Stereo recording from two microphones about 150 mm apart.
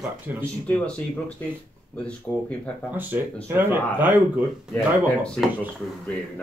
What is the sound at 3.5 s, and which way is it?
Speech, 15° right (ahead or behind).